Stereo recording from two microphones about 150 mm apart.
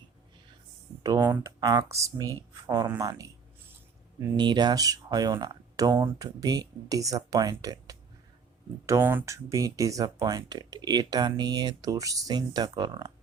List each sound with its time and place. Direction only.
1.0 s speech: 25° right (ahead or behind)